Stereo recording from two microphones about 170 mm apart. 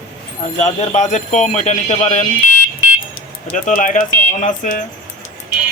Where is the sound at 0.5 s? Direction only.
45° left (ahead or behind).